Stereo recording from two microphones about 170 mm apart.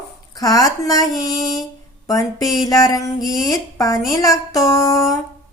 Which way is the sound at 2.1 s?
20° left (ahead or behind).